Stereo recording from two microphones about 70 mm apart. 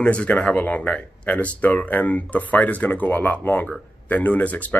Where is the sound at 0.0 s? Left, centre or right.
Centre.